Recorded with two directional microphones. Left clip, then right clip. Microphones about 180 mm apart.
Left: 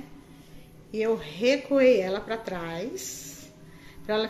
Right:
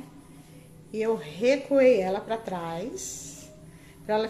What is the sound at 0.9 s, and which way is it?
A woman's voice, centre (ahead or behind).